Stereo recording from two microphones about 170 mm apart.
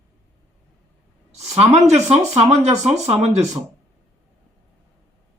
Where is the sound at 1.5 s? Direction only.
40° right (ahead or behind).